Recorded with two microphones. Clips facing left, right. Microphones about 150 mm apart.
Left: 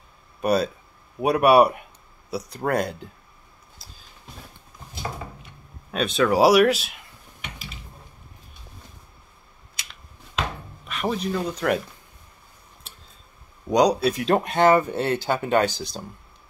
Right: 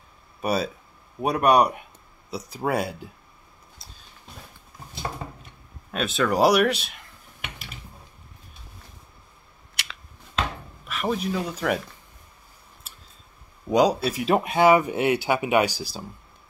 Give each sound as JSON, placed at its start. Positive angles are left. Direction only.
{"t": 0.4, "sound": "speech", "side_deg": 0}
{"t": 5.9, "sound": "speech", "side_deg": 0}
{"t": 9.8, "sound": "a sound", "side_deg": -75}
{"t": 10.9, "sound": "speech", "side_deg": 0}
{"t": 13.7, "sound": "speech", "side_deg": -5}